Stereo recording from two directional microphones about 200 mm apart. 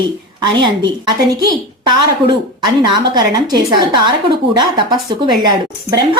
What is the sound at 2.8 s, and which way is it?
A woman's voice, 20° right (ahead or behind).